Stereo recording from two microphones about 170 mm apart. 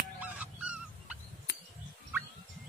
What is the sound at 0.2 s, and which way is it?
Goose, 10° right (ahead or behind).